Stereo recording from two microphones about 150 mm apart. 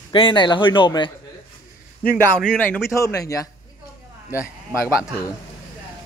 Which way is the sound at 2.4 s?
5° left (ahead or behind).